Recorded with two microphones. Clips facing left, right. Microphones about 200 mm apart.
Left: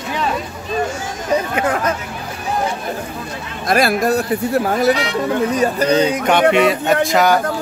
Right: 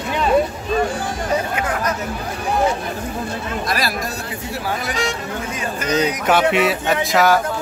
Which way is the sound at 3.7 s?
50° left (ahead or behind).